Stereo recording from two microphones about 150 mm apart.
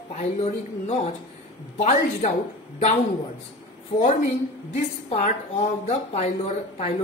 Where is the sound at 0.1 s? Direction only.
50° left (ahead or behind).